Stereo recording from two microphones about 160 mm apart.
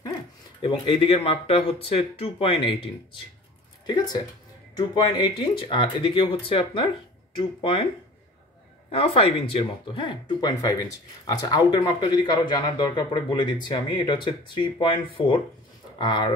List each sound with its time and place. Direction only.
0.6 s speech: 35° left (ahead or behind)
8.9 s speech: 35° left (ahead or behind)